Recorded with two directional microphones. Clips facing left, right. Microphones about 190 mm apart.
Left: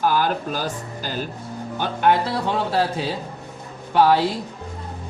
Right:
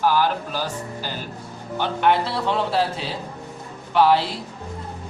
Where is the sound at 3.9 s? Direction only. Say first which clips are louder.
Left 1 dB; 45° left (ahead or behind).